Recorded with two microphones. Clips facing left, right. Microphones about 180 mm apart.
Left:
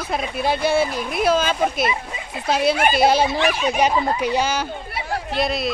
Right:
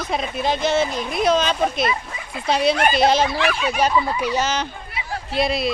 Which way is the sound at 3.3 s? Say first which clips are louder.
Left 2 dB; 20° left (ahead or behind).